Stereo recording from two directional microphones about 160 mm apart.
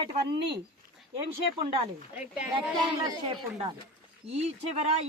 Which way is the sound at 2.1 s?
5° right (ahead or behind).